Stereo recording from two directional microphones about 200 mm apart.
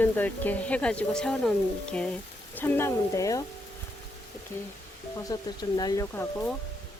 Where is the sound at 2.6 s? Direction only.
10° left (ahead or behind).